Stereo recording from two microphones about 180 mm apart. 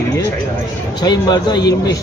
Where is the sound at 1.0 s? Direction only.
20° left (ahead or behind).